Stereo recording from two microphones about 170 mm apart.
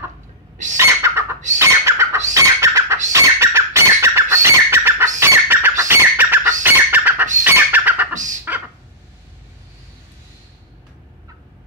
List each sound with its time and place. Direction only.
0.7 s bird: 15° right (ahead or behind)
6.6 s chicken: 10° right (ahead or behind)
7.4 s bird: 10° right (ahead or behind)
8.5 s dog: 10° right (ahead or behind)